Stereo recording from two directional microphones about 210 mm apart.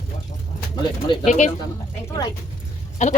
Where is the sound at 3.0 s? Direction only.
35° left (ahead or behind).